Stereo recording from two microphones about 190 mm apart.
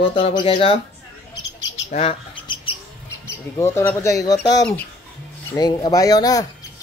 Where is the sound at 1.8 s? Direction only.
30° left (ahead or behind).